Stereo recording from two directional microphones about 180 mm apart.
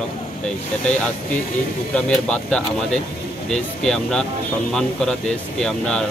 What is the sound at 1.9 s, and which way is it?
Speech, 5° left (ahead or behind).